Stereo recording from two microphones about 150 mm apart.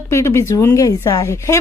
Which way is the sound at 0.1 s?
20° left (ahead or behind).